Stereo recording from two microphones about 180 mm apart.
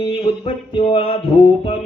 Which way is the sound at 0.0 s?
30° left (ahead or behind).